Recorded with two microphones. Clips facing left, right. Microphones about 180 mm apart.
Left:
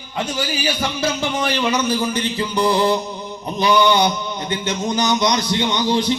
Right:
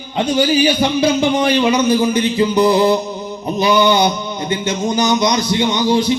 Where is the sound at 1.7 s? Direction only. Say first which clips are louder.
Right 6 dB; 10° right (ahead or behind).